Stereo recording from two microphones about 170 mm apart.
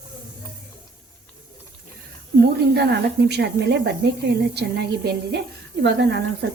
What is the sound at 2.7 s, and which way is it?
Speech, 75° right (ahead or behind).